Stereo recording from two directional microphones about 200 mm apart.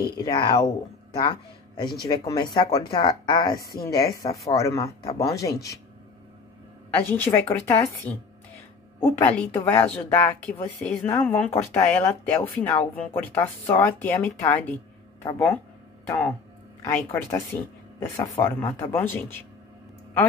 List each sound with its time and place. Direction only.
0.2 s speech: 20° left (ahead or behind)
7.1 s speech: 10° left (ahead or behind)